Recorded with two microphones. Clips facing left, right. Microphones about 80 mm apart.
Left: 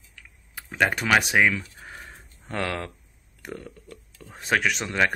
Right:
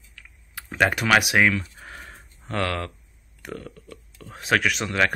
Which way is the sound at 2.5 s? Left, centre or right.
Centre.